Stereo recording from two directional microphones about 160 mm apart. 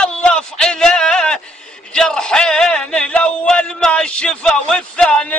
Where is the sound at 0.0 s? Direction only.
5° left (ahead or behind).